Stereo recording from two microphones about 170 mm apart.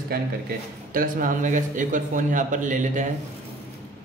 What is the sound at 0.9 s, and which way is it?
A man's voice, 55° right (ahead or behind).